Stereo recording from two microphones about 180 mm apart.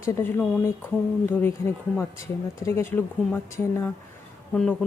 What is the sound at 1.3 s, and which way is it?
Speech, 10° left (ahead or behind).